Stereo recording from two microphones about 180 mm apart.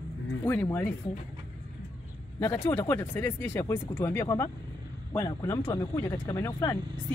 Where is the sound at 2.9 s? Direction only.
15° left (ahead or behind).